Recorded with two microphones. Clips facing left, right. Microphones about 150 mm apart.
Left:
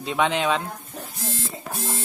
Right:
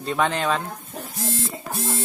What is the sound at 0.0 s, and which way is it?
Speech, centre (ahead or behind).